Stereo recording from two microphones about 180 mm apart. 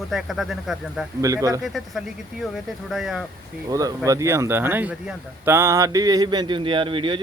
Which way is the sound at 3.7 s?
20° right (ahead or behind).